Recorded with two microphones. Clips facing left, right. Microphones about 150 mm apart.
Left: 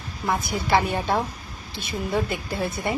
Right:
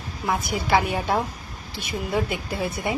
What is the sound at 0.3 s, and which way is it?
A woman's voice, 5° right (ahead or behind).